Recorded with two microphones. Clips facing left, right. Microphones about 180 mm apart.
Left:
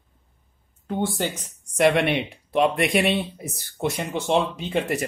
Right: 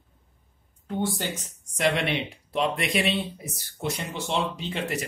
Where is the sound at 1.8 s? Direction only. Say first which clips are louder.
Left 6 dB; 60° left (ahead or behind).